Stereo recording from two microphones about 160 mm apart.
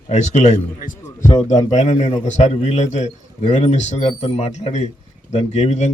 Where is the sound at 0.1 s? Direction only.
45° left (ahead or behind).